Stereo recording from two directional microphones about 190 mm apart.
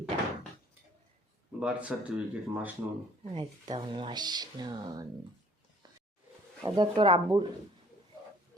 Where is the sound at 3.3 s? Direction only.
25° right (ahead or behind).